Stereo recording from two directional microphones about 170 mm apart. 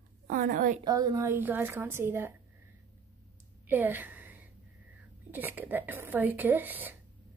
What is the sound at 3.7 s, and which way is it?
A woman's voice, 10° right (ahead or behind).